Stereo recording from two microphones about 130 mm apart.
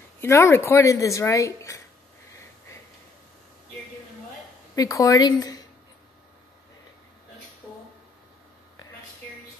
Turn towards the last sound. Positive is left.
turn(degrees=0)  # may be behind; listen again after turning